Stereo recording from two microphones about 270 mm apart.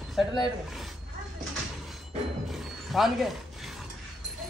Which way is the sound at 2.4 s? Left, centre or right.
Centre.